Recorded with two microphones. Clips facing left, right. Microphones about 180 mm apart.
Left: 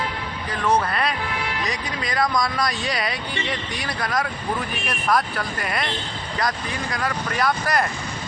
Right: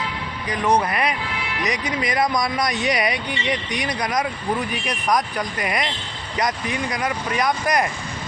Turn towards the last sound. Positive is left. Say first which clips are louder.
# right 1 dB
turn(degrees=-15)  # may be behind; listen again after turning